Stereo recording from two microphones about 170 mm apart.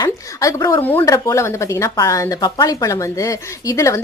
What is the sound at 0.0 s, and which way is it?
Speech, 20° left (ahead or behind).